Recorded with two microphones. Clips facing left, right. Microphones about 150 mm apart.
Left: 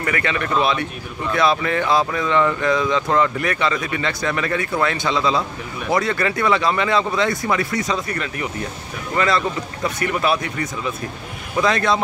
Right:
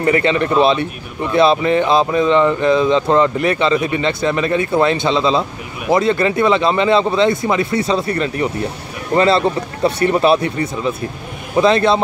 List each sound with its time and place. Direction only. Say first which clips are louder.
0.0 s speech: right 8 dB; 25° right (ahead or behind)